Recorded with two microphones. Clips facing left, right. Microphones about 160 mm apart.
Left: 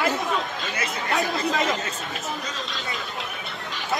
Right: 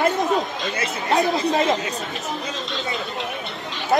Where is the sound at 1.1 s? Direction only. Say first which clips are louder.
Right 5 dB; 35° right (ahead or behind).